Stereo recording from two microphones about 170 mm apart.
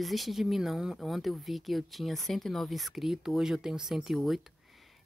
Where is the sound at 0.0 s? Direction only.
Centre (ahead or behind).